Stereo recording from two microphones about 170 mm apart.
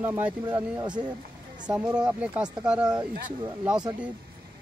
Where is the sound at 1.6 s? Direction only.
5° right (ahead or behind).